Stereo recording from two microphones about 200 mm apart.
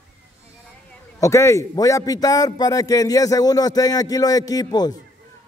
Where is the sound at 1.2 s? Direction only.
15° left (ahead or behind).